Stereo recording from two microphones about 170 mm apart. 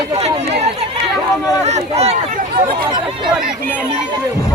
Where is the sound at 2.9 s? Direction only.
25° right (ahead or behind).